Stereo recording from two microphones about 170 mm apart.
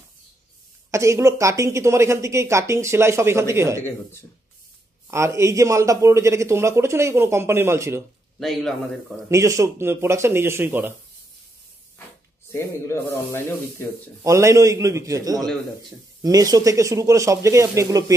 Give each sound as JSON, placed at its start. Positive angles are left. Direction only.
{"t": 0.9, "sound": "a man's voice", "side_deg": -15}
{"t": 5.1, "sound": "a man's voice", "side_deg": -15}
{"t": 8.4, "sound": "speech", "side_deg": 0}
{"t": 9.3, "sound": "a man's voice", "side_deg": -20}
{"t": 12.4, "sound": "speech", "side_deg": 15}
{"t": 14.2, "sound": "speech", "side_deg": -15}